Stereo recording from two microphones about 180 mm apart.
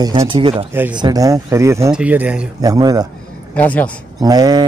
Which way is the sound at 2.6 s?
20° right (ahead or behind).